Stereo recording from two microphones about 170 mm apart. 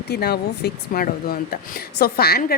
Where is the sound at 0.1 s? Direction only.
70° left (ahead or behind).